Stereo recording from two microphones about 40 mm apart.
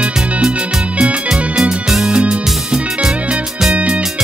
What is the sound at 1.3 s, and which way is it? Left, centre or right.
Music, centre.